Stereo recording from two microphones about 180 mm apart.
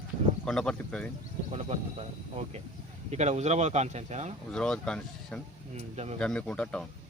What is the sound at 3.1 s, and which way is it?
Speech, 40° right (ahead or behind).